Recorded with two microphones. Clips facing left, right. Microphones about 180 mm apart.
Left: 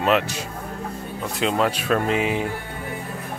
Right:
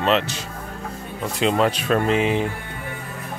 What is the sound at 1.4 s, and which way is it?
Speech, centre (ahead or behind).